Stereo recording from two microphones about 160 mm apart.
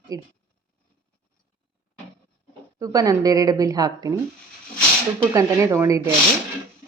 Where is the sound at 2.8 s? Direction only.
20° right (ahead or behind).